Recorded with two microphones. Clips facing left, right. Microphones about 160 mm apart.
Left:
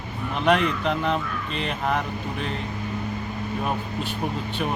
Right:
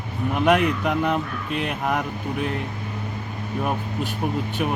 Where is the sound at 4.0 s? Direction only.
45° right (ahead or behind).